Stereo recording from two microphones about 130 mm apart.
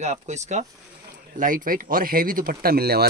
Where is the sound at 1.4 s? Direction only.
90° right.